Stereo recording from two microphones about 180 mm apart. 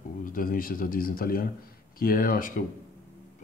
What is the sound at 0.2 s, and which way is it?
Speech, 50° left (ahead or behind).